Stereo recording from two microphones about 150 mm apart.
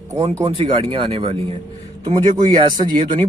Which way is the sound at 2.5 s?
30° right (ahead or behind).